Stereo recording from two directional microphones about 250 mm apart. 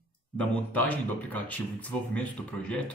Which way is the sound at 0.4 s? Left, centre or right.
Centre.